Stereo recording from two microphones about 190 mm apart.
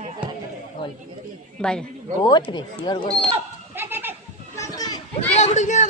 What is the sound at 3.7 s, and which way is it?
Goat, 10° right (ahead or behind).